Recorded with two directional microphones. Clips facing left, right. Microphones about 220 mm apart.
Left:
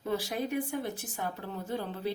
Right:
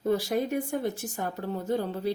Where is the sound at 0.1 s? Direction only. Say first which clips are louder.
Right 5 dB; 45° right (ahead or behind).